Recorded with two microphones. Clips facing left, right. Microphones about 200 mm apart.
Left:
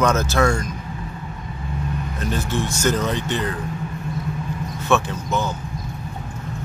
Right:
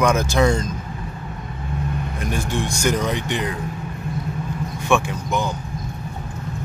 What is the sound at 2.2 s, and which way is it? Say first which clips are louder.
Speech: left 1 dB; 15° right (ahead or behind).